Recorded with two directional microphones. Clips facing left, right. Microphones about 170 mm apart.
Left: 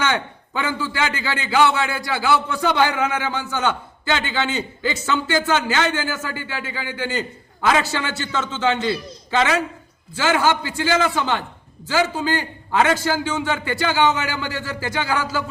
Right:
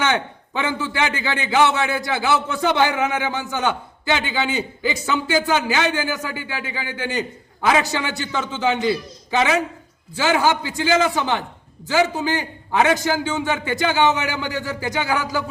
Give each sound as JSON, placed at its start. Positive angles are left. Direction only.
{"t": 0.0, "sound": "a man's voice", "side_deg": -20}